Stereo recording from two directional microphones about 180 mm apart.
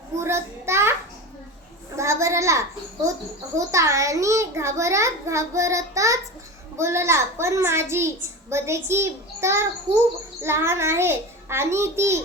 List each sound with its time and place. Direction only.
0.2 s a sound: 15° right (ahead or behind)
2.0 s child singing: 15° right (ahead or behind)
3.5 s a child's voice: 15° right (ahead or behind)
9.9 s speech: 35° right (ahead or behind)
10.4 s a child's voice: 15° right (ahead or behind)